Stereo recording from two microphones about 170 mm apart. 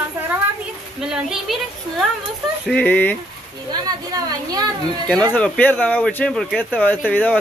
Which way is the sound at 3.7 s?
25° right (ahead or behind).